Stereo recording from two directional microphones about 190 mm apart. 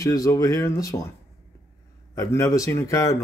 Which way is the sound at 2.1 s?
15° left (ahead or behind).